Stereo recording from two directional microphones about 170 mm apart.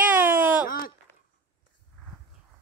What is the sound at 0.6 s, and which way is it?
Speech, 55° left (ahead or behind).